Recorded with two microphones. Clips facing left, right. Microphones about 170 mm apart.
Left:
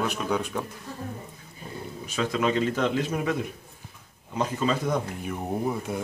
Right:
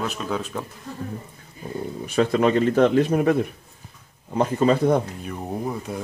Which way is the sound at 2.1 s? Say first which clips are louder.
Right 6 dB; 50° right (ahead or behind).